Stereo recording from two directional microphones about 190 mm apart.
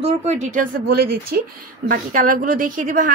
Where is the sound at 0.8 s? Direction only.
50° right (ahead or behind).